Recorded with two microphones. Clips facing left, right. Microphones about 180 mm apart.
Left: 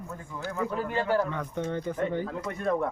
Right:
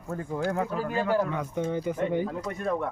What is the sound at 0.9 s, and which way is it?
Speech, 10° right (ahead or behind).